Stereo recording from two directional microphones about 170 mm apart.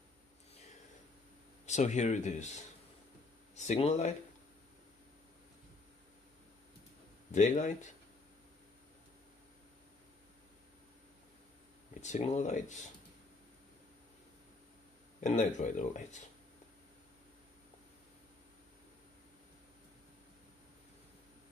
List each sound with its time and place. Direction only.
1.7 s speech: 45° left (ahead or behind)
7.3 s speech: 45° left (ahead or behind)
12.2 s speech: 40° left (ahead or behind)
15.1 s speech: 45° left (ahead or behind)